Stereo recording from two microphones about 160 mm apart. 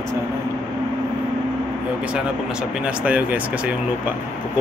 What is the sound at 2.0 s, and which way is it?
Speech, 5° right (ahead or behind).